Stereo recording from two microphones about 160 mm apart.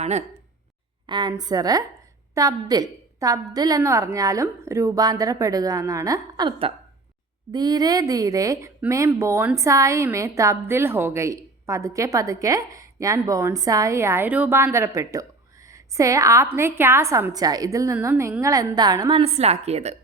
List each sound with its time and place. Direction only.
0.0 s speech: 45° right (ahead or behind)
1.0 s a woman's voice: 30° right (ahead or behind)